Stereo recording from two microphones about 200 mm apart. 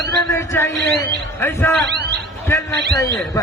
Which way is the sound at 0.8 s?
60° right (ahead or behind).